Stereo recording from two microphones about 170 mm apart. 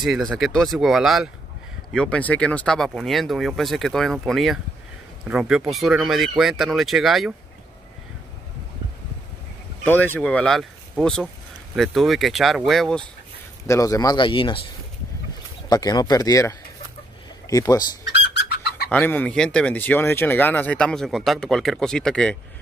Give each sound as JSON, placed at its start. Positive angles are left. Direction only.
{"t": 0.0, "sound": "speech", "side_deg": 0}
{"t": 9.8, "sound": "speech", "side_deg": 10}
{"t": 13.7, "sound": "speech", "side_deg": 20}
{"t": 15.7, "sound": "speech", "side_deg": 25}
{"t": 18.3, "sound": "bird", "side_deg": 75}
{"t": 18.9, "sound": "speech", "side_deg": 10}